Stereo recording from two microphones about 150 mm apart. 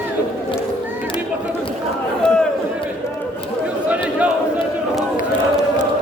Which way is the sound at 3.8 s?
10° right (ahead or behind).